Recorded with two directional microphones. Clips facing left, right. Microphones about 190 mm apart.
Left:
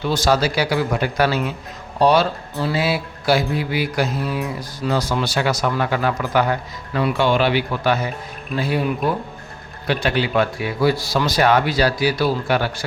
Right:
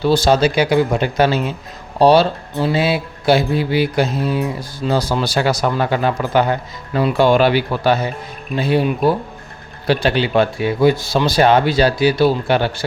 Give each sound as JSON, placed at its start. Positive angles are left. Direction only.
{"t": 0.0, "sound": "speech", "side_deg": -30}
{"t": 7.2, "sound": "speech", "side_deg": -40}